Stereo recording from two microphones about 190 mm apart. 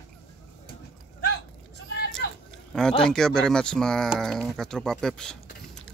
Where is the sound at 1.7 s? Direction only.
60° left (ahead or behind).